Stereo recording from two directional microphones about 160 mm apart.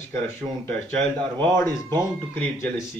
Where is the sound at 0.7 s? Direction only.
10° left (ahead or behind).